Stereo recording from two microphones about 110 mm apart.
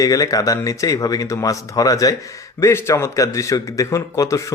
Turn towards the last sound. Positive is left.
turn(degrees=30)  # may be behind; listen again after turning